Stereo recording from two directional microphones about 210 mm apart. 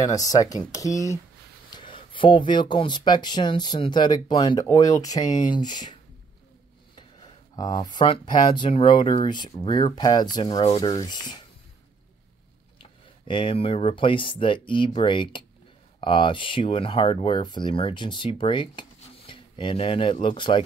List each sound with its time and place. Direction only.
0.0 s speech: 15° left (ahead or behind)
7.0 s speech: 20° left (ahead or behind)
13.3 s speech: 25° left (ahead or behind)